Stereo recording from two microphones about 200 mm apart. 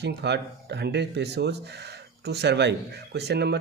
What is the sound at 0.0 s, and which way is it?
Speech, 60° right (ahead or behind).